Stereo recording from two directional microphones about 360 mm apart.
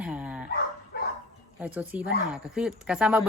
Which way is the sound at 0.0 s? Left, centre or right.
Centre.